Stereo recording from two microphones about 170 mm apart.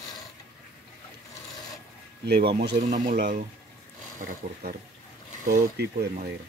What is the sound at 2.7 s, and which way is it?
Speech, 45° right (ahead or behind).